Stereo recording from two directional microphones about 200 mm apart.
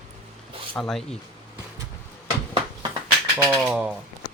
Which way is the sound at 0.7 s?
Centre (ahead or behind).